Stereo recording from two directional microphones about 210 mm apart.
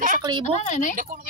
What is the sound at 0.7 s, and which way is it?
Speech, 35° left (ahead or behind).